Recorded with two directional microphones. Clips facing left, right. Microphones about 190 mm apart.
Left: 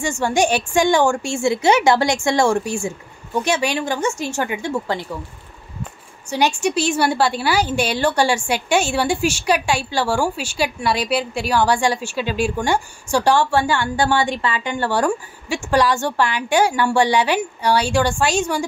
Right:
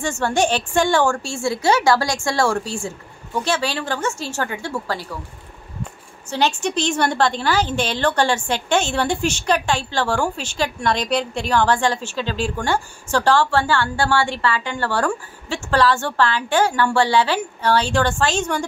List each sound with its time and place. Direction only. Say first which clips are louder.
0.0 s a woman's voice: left 1 dB; 10° left (ahead or behind)
6.3 s a woman's voice: left 2 dB; 10° left (ahead or behind)